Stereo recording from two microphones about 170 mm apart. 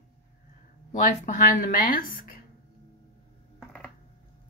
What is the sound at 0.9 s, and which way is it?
Speech, 50° left (ahead or behind).